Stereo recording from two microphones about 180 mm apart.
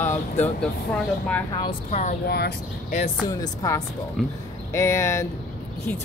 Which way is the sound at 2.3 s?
65° left (ahead or behind).